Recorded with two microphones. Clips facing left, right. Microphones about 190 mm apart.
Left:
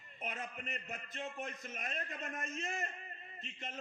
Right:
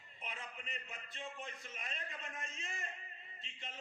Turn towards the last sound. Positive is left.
turn(degrees=45)  # may be behind; listen again after turning